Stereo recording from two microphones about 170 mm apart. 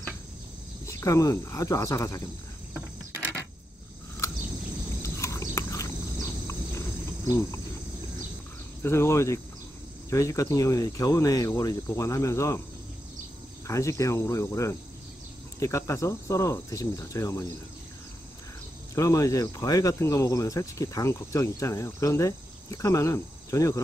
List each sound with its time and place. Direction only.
0.8 s speech: 20° left (ahead or behind)
5.0 s a sound: 20° left (ahead or behind)
7.2 s speech: 15° left (ahead or behind)
8.8 s speech: 15° left (ahead or behind)
13.7 s speech: 15° left (ahead or behind)
18.9 s speech: 20° left (ahead or behind)